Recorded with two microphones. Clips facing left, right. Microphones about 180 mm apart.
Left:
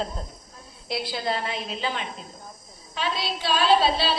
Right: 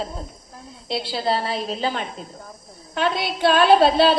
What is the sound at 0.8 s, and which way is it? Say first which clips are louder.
A woman's voice: right 4 dB; 25° right (ahead or behind).